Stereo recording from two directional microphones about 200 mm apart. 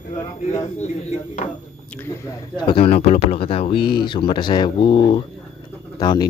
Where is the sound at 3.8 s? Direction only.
50° left (ahead or behind).